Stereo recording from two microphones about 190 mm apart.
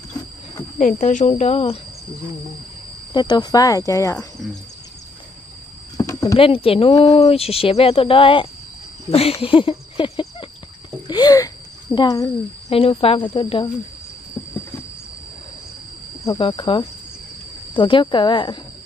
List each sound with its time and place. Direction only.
0.7 s speech: 40° left (ahead or behind)
3.1 s speech: 20° left (ahead or behind)
5.9 s a sound: 15° left (ahead or behind)
6.3 s speech: 30° left (ahead or behind)
9.1 s a sound: 30° left (ahead or behind)
12.6 s speech: 30° left (ahead or behind)
16.3 s speech: 25° left (ahead or behind)